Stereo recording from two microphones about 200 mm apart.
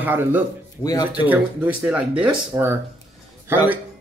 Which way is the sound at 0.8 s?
20° left (ahead or behind).